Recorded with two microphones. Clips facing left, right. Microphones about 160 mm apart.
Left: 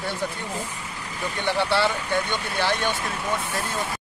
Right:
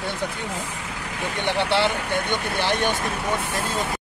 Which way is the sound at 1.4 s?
20° right (ahead or behind).